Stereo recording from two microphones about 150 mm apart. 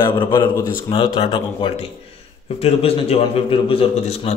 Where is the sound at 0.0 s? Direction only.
30° left (ahead or behind).